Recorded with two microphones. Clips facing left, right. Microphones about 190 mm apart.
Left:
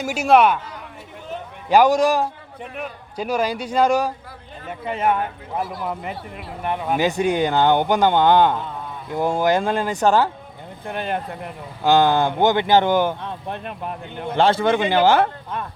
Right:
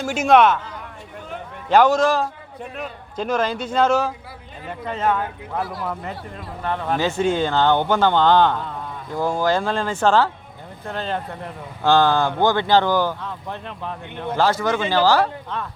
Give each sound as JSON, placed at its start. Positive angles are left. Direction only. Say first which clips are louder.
{"t": 0.0, "sound": "speech", "louder": "even", "side_deg": 5}
{"t": 1.7, "sound": "speech", "louder": "left 1 dB", "side_deg": 15}